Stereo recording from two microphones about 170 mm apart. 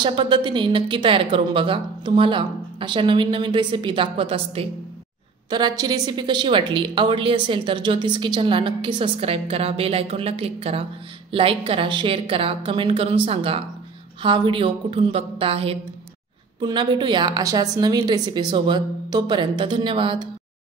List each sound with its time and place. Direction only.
0.0 s a woman's voice: 30° right (ahead or behind)